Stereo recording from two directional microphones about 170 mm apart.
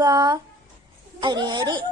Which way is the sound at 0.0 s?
20° right (ahead or behind).